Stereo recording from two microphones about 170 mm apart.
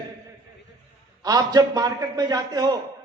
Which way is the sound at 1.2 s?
25° right (ahead or behind).